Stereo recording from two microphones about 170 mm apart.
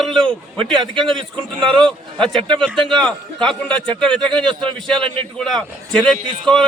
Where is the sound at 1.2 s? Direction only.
30° right (ahead or behind).